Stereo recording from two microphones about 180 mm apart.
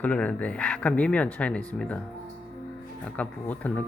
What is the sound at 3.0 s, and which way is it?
Speech, 10° left (ahead or behind).